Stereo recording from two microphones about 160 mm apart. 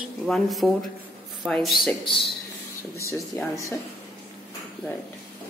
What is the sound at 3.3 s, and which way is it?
Speech, 20° left (ahead or behind).